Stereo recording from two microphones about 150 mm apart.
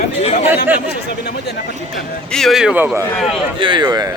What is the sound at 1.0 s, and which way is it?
Speech, 90° left.